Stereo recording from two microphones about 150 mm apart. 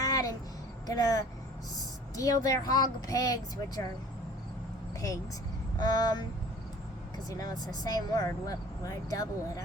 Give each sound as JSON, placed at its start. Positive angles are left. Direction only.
{"t": 0.0, "sound": "a sound", "side_deg": 25}
{"t": 0.9, "sound": "speech", "side_deg": 25}
{"t": 4.9, "sound": "speech", "side_deg": 20}
{"t": 7.3, "sound": "speech", "side_deg": 25}